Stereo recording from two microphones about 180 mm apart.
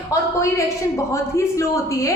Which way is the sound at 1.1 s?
15° left (ahead or behind).